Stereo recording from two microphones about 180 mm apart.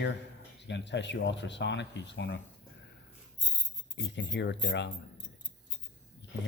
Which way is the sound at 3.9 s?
75° left (ahead or behind).